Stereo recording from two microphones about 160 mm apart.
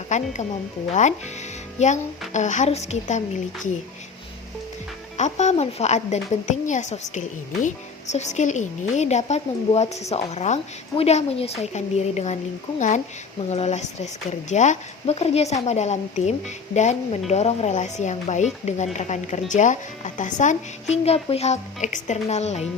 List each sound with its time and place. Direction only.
0.1 s speech: 50° left (ahead or behind)
1.8 s speech: 50° left (ahead or behind)
5.1 s speech: 45° left (ahead or behind)
13.5 s speech: 45° left (ahead or behind)